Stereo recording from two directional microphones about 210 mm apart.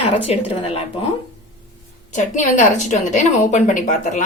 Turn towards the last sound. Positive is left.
turn(degrees=35)  # may be behind; listen again after turning